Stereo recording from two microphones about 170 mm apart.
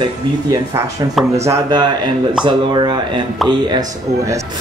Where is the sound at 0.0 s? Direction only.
25° right (ahead or behind).